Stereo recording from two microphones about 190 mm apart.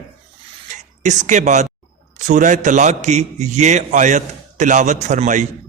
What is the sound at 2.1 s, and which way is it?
A man's voice, 40° right (ahead or behind).